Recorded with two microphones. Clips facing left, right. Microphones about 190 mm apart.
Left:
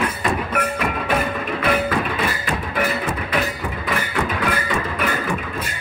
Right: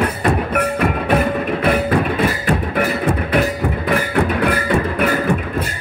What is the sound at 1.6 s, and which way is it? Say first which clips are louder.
Music: right 3 dB; 55° right (ahead or behind).